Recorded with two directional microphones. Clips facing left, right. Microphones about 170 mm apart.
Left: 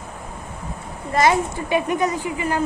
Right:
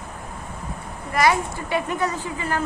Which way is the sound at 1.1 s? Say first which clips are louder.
Left 2 dB; 25° left (ahead or behind).